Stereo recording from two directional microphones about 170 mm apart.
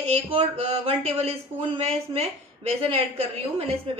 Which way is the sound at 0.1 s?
35° right (ahead or behind).